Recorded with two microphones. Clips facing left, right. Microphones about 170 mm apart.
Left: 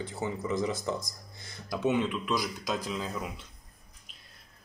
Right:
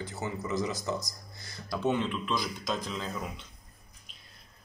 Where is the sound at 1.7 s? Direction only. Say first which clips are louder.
Left 1 dB; 10° left (ahead or behind).